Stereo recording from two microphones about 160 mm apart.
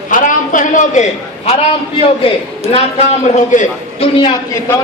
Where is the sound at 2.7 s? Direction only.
40° left (ahead or behind).